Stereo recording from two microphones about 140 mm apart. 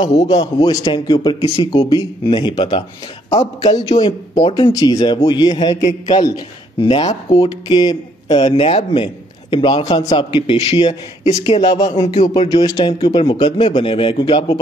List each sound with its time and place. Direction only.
0.0 s speech: 50° left (ahead or behind)
0.3 s a man's voice: 30° left (ahead or behind)
3.3 s speech: 50° left (ahead or behind)
4.0 s speech: 35° left (ahead or behind)
5.9 s speech: 50° left (ahead or behind)
6.2 s speech: 35° left (ahead or behind)
11.7 s a man's voice: 30° left (ahead or behind)
12.0 s speech: 45° left (ahead or behind)
12.5 s speech: 30° left (ahead or behind)